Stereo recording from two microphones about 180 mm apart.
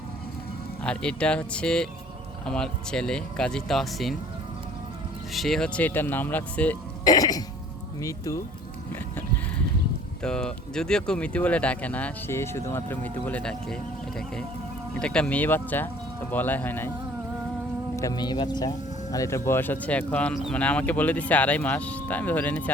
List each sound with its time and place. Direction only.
0.9 s speech: 5° left (ahead or behind)
5.3 s speech: centre (ahead or behind)
7.0 s throat clearing: 20° left (ahead or behind)
8.0 s speech: 20° left (ahead or behind)
8.9 s a sound: 10° left (ahead or behind)
10.2 s speech: 5° left (ahead or behind)
14.9 s speech: 5° left (ahead or behind)
17.9 s speech: 20° left (ahead or behind)